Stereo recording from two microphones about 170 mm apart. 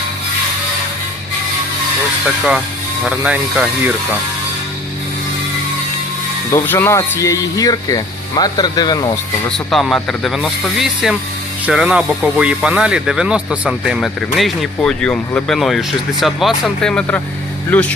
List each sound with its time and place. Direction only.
2.2 s speech: centre (ahead or behind)
6.5 s speech: 15° left (ahead or behind)
9.6 s speech: centre (ahead or behind)